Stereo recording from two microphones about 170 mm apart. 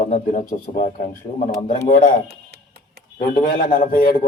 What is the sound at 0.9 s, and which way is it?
Speech, 35° left (ahead or behind).